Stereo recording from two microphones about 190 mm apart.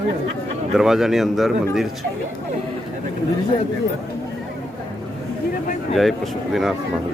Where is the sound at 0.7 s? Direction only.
Centre (ahead or behind).